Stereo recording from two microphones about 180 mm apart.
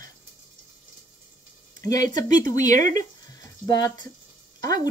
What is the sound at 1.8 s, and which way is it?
Speech, 20° left (ahead or behind).